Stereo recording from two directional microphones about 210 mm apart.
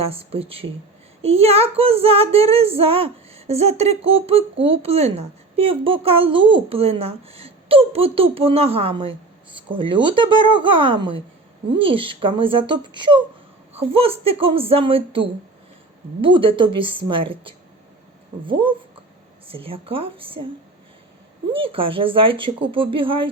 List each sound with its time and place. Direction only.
0.0 s a woman's voice: 30° right (ahead or behind)
21.5 s a woman's voice: 25° right (ahead or behind)